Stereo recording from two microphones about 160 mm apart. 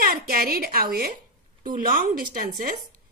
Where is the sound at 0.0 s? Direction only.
65° right (ahead or behind).